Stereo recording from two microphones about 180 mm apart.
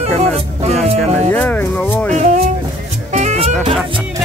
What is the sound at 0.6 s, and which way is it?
Speech, 35° right (ahead or behind).